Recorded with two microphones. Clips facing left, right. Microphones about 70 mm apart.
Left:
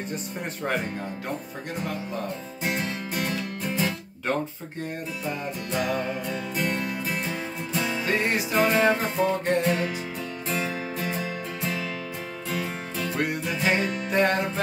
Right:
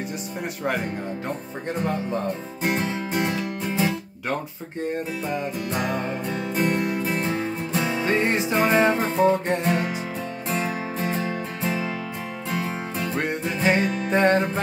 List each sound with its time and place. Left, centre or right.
2.9 s music: right
5.9 s music: right
12.9 s music: right